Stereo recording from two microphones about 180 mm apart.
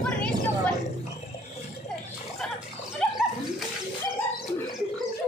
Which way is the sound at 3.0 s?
Centre (ahead or behind).